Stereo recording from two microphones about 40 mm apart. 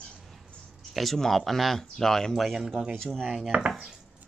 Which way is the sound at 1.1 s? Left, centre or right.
Centre.